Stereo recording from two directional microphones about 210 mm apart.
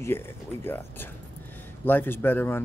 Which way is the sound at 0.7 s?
10° left (ahead or behind).